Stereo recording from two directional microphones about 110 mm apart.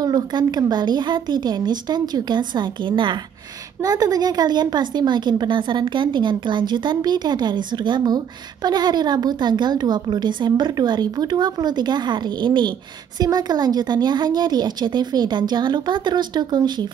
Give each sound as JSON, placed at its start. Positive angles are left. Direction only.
{"t": 0.0, "sound": "a woman's voice", "side_deg": -40}
{"t": 3.8, "sound": "a woman's voice", "side_deg": -35}